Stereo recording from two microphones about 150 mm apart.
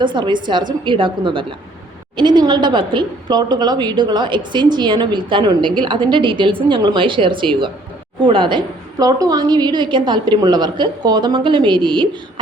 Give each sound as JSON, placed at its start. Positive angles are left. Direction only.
{"t": 0.0, "sound": "a woman's voice", "side_deg": -30}